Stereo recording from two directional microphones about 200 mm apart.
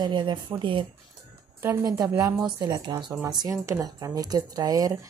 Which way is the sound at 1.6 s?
15° right (ahead or behind).